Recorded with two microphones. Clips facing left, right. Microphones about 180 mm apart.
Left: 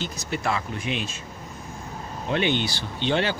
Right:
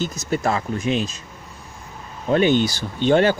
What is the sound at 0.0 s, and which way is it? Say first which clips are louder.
Speech: right 6 dB; 45° right (ahead or behind).